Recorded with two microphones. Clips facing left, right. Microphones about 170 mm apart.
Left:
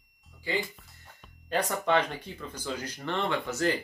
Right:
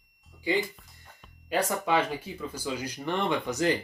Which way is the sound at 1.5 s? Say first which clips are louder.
Even; 10° right (ahead or behind).